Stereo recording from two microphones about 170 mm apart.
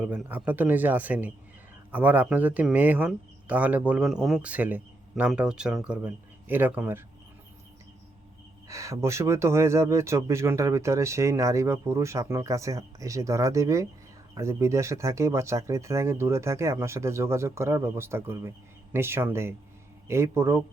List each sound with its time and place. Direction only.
0.0 s speech: 10° right (ahead or behind)
8.6 s speech: 20° right (ahead or behind)